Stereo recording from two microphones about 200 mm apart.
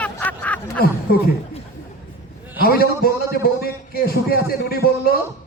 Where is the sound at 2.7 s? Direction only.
50° left (ahead or behind).